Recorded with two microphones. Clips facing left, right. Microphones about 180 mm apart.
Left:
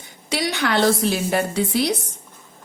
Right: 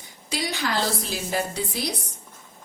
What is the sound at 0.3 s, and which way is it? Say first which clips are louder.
A woman's voice: left 5 dB; 70° left (ahead or behind).